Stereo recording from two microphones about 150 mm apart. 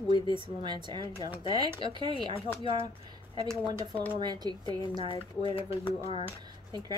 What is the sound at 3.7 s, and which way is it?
Speech, 25° right (ahead or behind).